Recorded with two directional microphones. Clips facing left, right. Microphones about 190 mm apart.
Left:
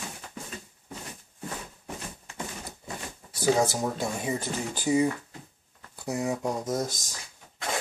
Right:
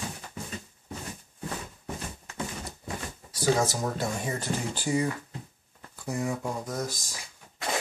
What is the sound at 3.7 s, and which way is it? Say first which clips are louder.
Speech: left 1 dB; 15° left (ahead or behind).